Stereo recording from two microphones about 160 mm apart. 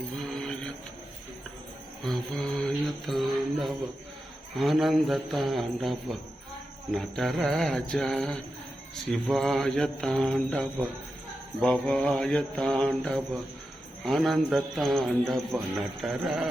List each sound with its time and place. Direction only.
0.2 s music: centre (ahead or behind)
2.0 s mantra: 5° left (ahead or behind)